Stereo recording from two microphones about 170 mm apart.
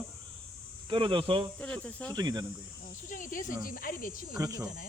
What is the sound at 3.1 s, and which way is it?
Speech, 50° left (ahead or behind).